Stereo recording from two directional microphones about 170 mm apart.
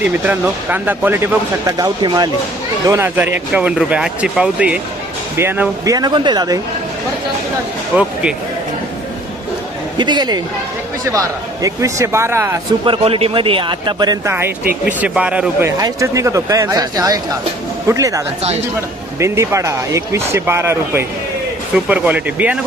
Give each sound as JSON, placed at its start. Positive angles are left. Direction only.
{"t": 0.0, "sound": "speech", "side_deg": -10}
{"t": 7.9, "sound": "speech", "side_deg": -5}
{"t": 10.0, "sound": "speech", "side_deg": -25}
{"t": 12.8, "sound": "speech", "side_deg": -30}
{"t": 15.8, "sound": "speech", "side_deg": -20}
{"t": 19.2, "sound": "speech", "side_deg": -15}